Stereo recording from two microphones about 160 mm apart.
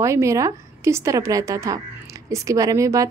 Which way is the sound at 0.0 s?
20° right (ahead or behind).